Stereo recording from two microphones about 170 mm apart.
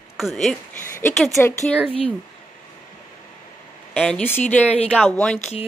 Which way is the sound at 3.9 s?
5° left (ahead or behind).